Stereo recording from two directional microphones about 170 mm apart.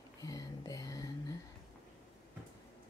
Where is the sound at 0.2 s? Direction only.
20° left (ahead or behind).